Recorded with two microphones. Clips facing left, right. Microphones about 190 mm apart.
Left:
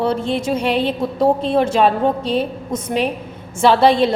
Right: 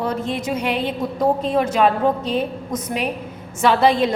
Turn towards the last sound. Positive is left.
turn(degrees=30)  # may be behind; listen again after turning